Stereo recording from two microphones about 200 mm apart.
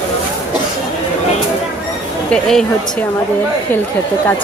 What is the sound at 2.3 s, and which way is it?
Speech, centre (ahead or behind).